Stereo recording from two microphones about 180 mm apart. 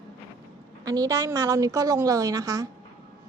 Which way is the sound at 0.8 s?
20° right (ahead or behind).